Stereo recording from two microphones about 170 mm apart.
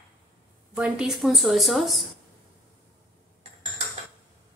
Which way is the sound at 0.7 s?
5° right (ahead or behind).